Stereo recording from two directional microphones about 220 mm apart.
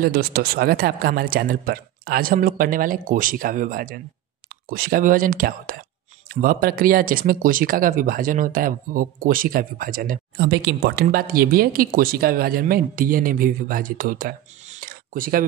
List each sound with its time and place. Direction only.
0.0 s speech: 45° right (ahead or behind)